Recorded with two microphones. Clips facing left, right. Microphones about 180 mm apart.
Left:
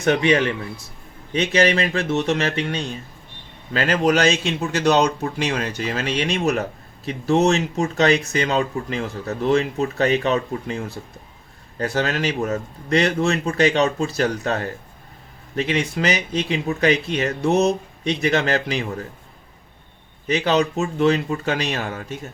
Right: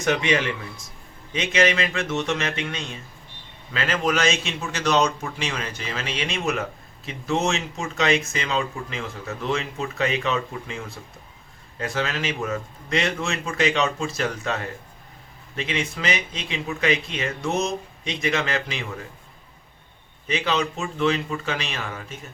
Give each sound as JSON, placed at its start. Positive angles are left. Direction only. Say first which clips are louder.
{"t": 0.0, "sound": "a man's voice", "louder": "left 5 dB", "side_deg": 35}
{"t": 11.9, "sound": "a man's voice", "louder": "left 5 dB", "side_deg": 40}
{"t": 20.3, "sound": "a man's voice", "louder": "left 5 dB", "side_deg": 40}